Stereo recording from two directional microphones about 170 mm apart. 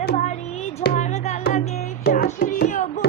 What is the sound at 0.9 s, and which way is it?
Music, 40° left (ahead or behind).